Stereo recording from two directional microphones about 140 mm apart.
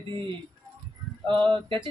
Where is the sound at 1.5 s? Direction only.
35° right (ahead or behind).